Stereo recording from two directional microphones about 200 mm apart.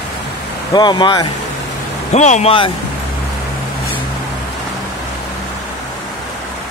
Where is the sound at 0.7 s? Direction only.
25° left (ahead or behind).